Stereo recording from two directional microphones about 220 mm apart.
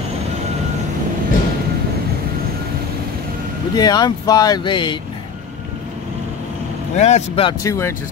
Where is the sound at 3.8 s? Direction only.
20° left (ahead or behind).